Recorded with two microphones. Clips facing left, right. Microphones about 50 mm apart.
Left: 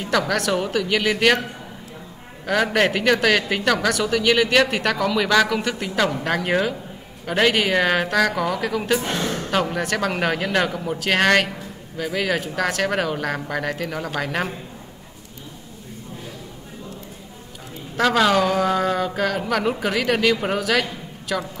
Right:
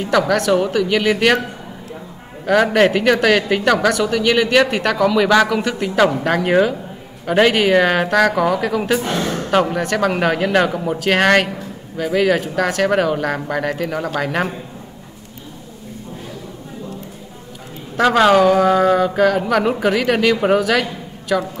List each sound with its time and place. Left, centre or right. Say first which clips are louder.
0.3 s speech: right 6 dB; centre
2.4 s speech: right 6 dB; centre
9.1 s a sound: right 4 dB; right
9.5 s speech: right 6 dB; centre
17.9 s speech: right 5 dB; centre